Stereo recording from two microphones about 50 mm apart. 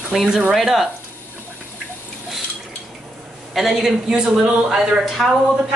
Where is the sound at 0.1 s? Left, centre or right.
Centre.